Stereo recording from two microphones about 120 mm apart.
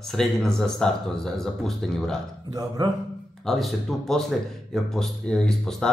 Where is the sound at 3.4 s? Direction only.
Centre (ahead or behind).